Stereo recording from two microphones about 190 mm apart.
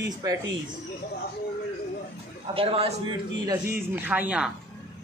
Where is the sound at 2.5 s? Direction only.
30° right (ahead or behind).